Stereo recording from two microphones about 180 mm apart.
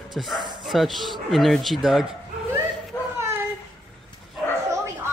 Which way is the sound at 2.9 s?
15° left (ahead or behind).